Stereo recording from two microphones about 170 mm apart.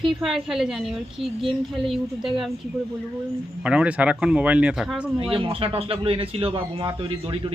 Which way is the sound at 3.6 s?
5° right (ahead or behind).